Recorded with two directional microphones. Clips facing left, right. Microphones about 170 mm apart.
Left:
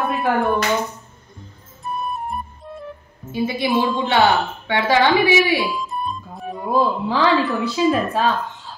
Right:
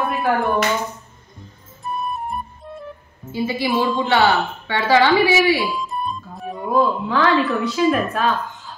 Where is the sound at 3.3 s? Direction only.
20° left (ahead or behind).